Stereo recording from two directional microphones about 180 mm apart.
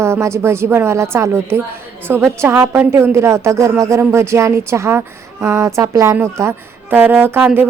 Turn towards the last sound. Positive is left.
turn(degrees=-10)  # may be behind; listen again after turning